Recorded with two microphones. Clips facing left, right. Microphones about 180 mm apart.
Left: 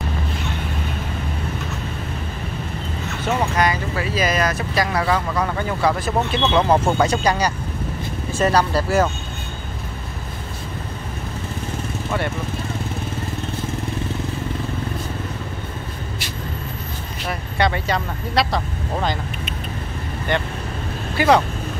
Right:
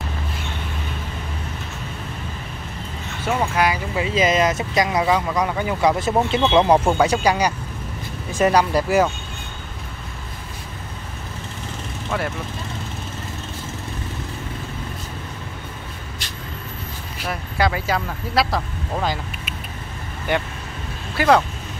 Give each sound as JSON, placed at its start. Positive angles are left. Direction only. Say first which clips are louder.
{"t": 3.3, "sound": "speech", "louder": "even", "side_deg": -5}
{"t": 17.2, "sound": "speech", "louder": "even", "side_deg": 0}